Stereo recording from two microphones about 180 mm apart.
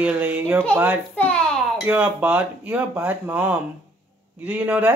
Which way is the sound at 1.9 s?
10° right (ahead or behind).